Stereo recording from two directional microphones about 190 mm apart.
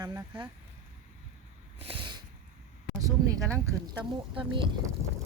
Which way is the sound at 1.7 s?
30° right (ahead or behind).